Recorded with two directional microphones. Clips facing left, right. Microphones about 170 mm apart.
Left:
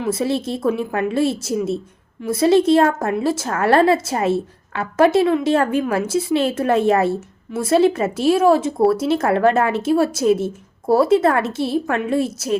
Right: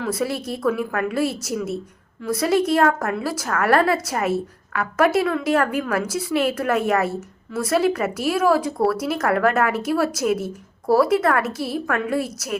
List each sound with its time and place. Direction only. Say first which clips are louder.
0.0 s speech: left 4 dB; 25° left (ahead or behind)